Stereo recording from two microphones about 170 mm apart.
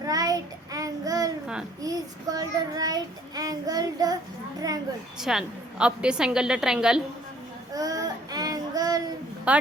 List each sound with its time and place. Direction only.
0.0 s child singing: 20° right (ahead or behind)
5.2 s a woman's voice: 5° right (ahead or behind)
7.7 s child singing: 20° right (ahead or behind)
9.5 s a woman's voice: 5° right (ahead or behind)